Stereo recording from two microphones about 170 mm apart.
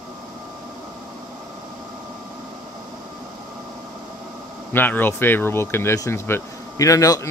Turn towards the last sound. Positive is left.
turn(degrees=20)  # may be behind; listen again after turning